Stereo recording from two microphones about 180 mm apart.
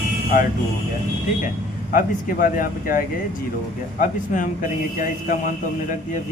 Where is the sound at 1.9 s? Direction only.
50° left (ahead or behind).